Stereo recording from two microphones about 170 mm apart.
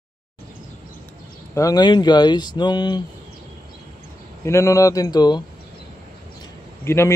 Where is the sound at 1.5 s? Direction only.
20° left (ahead or behind).